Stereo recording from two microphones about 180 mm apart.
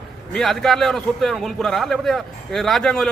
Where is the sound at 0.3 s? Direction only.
Centre (ahead or behind).